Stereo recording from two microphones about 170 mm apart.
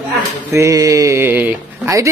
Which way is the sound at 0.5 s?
20° right (ahead or behind).